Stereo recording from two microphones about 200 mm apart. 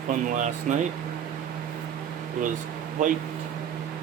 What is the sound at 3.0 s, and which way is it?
Speech, 40° right (ahead or behind).